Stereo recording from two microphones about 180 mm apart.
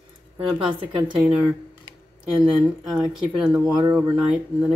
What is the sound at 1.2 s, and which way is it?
Speech, 10° right (ahead or behind).